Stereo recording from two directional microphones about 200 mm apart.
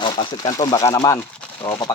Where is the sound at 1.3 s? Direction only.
5° left (ahead or behind).